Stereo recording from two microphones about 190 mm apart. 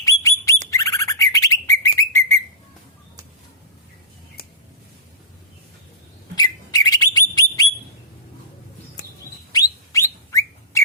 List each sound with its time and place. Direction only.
0.0 s bird: 15° left (ahead or behind)
6.3 s bird: 20° left (ahead or behind)
9.5 s bird: 20° left (ahead or behind)